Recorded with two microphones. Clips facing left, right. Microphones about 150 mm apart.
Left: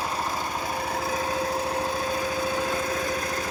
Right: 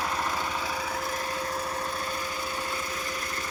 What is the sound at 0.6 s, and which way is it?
Light engine, 55° left (ahead or behind).